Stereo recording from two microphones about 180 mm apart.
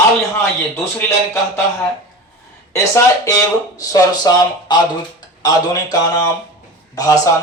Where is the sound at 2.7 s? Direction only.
15° left (ahead or behind).